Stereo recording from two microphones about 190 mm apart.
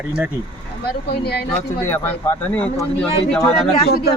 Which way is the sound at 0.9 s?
55° left (ahead or behind).